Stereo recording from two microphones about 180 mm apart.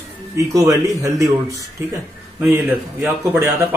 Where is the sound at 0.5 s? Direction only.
20° right (ahead or behind).